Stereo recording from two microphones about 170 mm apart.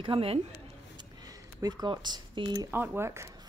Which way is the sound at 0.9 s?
20° right (ahead or behind).